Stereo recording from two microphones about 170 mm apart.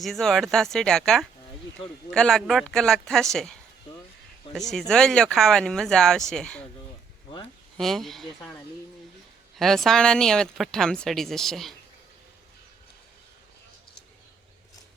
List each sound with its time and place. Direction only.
0.0 s speech: centre (ahead or behind)
4.7 s speech: 5° left (ahead or behind)
7.8 s speech: centre (ahead or behind)
9.6 s speech: centre (ahead or behind)